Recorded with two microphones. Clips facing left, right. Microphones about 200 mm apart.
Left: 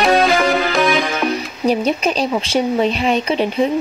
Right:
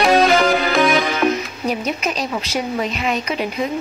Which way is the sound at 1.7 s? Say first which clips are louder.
Left 6 dB; 30° left (ahead or behind).